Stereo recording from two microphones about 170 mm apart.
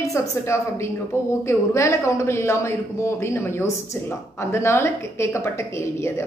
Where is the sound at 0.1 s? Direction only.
15° left (ahead or behind).